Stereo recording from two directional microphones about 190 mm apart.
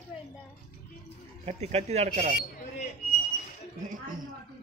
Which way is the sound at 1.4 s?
35° right (ahead or behind).